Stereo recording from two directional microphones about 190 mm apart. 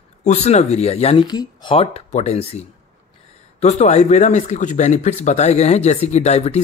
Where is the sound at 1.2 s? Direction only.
20° left (ahead or behind).